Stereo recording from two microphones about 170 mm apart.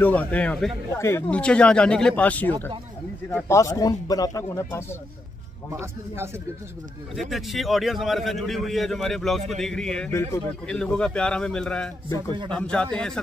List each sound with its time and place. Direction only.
0.0 s speech: 10° left (ahead or behind)
0.9 s speech: 15° left (ahead or behind)
5.7 s speech: 15° right (ahead or behind)
7.2 s a man's voice: centre (ahead or behind)